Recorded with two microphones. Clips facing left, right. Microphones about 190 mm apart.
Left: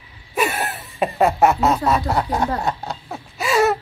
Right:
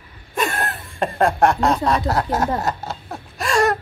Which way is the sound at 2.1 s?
Centre (ahead or behind).